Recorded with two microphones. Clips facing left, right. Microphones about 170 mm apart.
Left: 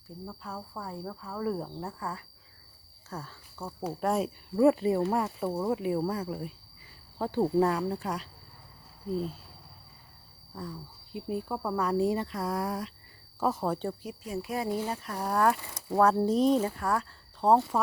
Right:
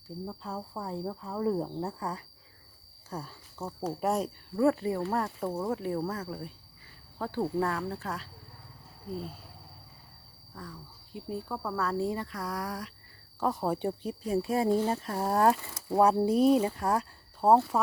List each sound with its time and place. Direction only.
0.3 s speech: 20° right (ahead or behind)
4.0 s cricket: centre (ahead or behind)
4.5 s speech: 15° left (ahead or behind)
5.2 s speech: 5° left (ahead or behind)
10.5 s speech: 20° left (ahead or behind)
13.4 s cricket: centre (ahead or behind)
14.0 s speech: 30° right (ahead or behind); by 16.7 s 10° right (ahead or behind)
16.7 s speech: 20° right (ahead or behind)
17.4 s speech: 10° right (ahead or behind)